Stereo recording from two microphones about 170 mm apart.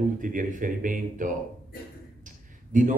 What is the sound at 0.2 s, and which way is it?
Speech, 50° right (ahead or behind).